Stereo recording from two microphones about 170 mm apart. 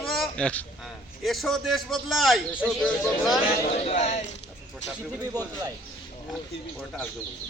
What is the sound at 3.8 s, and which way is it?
Speech, 40° left (ahead or behind).